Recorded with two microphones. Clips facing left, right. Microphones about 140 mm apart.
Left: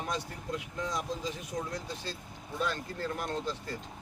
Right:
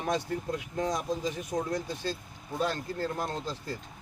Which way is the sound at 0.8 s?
45° right (ahead or behind).